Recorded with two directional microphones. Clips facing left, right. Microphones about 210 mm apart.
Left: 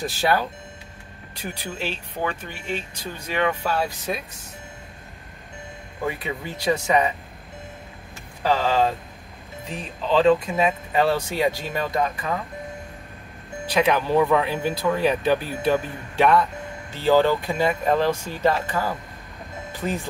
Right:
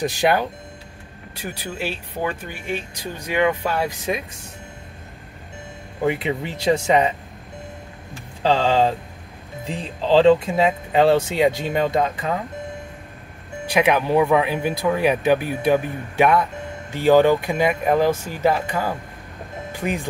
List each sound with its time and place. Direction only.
0.0 s speech: 20° right (ahead or behind)
6.0 s speech: 25° right (ahead or behind)
8.4 s speech: 25° right (ahead or behind)
13.7 s speech: 10° right (ahead or behind)
19.7 s music: 15° right (ahead or behind)